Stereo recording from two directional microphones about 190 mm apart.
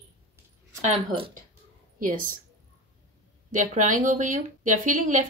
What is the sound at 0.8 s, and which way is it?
Speech, 30° right (ahead or behind).